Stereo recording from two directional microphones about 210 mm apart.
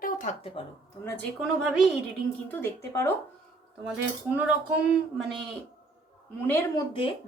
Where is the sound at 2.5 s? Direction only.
10° left (ahead or behind).